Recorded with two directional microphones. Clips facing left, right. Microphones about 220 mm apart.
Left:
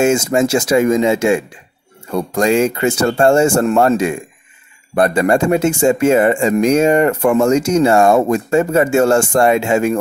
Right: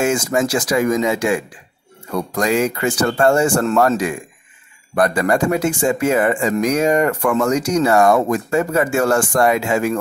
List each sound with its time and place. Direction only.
0.0 s speech: 25° left (ahead or behind)